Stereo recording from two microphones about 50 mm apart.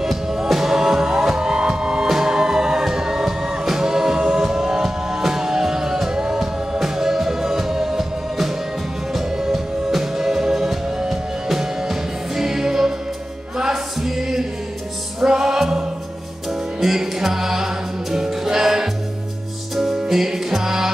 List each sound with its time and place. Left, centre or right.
0.0 s music: centre
16.8 s music: centre